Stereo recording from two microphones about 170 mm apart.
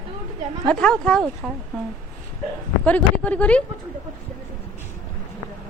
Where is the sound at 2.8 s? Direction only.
10° left (ahead or behind).